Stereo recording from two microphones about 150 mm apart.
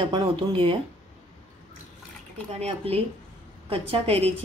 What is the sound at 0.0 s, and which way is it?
Speech, 35° right (ahead or behind).